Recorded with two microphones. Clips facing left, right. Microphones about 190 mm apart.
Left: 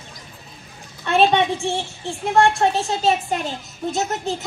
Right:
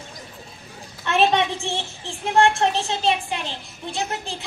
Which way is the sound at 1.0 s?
35° left (ahead or behind).